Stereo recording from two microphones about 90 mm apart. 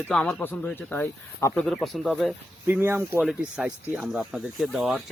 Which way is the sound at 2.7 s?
25° right (ahead or behind).